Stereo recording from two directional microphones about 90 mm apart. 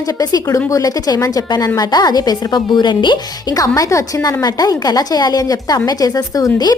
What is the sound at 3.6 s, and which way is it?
A woman's voice, 40° left (ahead or behind).